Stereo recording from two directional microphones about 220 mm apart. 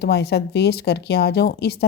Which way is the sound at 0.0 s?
50° left (ahead or behind).